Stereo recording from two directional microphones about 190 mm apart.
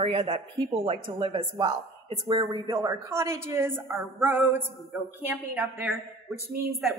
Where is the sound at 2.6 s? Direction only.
15° right (ahead or behind).